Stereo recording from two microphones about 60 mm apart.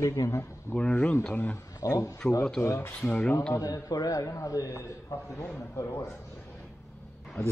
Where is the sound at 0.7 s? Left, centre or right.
Left.